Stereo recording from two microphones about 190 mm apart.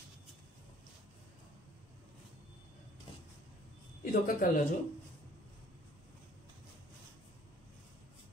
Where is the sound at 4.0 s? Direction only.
45° left (ahead or behind).